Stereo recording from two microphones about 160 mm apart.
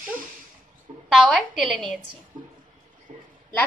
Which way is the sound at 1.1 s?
Centre (ahead or behind).